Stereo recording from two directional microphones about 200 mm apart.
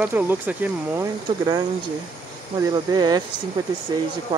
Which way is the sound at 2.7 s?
20° right (ahead or behind).